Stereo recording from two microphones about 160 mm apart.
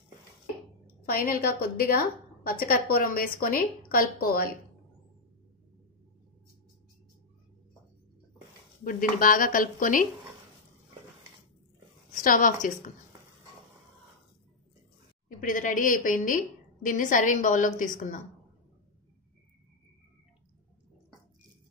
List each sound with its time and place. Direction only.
1.0 s a woman's voice: 65° left (ahead or behind)
8.8 s a woman's voice: 60° left (ahead or behind)
12.1 s a woman's voice: 60° left (ahead or behind)
15.2 s a woman's voice: 55° left (ahead or behind)